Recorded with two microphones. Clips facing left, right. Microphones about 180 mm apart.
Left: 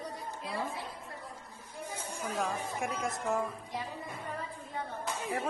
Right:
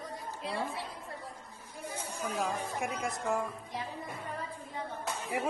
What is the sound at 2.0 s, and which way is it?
Chatter, 10° right (ahead or behind).